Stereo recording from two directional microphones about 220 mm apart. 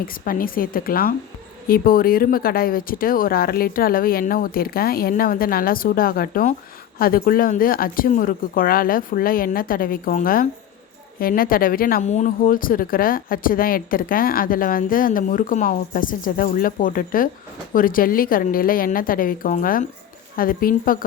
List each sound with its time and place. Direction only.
0.0 s speech: 40° left (ahead or behind)